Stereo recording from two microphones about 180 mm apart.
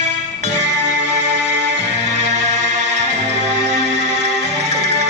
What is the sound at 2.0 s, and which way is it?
Music, 40° right (ahead or behind).